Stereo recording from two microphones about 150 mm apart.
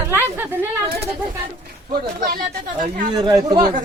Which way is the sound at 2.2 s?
65° right (ahead or behind).